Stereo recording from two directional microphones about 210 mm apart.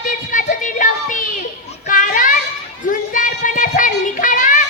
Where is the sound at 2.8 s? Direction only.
40° left (ahead or behind).